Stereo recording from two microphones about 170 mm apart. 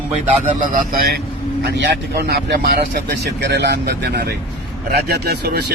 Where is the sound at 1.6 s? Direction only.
75° right (ahead or behind).